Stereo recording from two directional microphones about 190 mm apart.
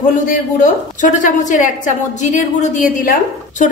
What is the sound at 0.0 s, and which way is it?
A woman's voice, 45° left (ahead or behind).